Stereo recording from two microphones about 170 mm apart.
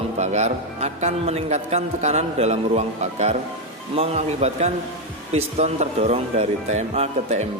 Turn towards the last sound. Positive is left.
turn(degrees=-40)  # may be behind; listen again after turning